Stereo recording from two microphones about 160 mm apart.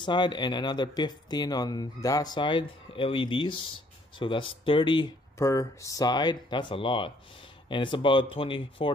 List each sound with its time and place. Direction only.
0.0 s speech: 30° left (ahead or behind)